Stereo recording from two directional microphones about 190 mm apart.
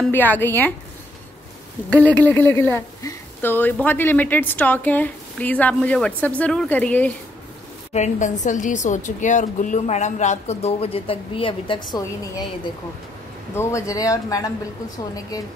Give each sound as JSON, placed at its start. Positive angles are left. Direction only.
{"t": 0.0, "sound": "a woman's voice", "side_deg": 10}
{"t": 1.9, "sound": "a woman's voice", "side_deg": 10}
{"t": 7.9, "sound": "a woman's voice", "side_deg": 40}
{"t": 13.6, "sound": "a woman's voice", "side_deg": 15}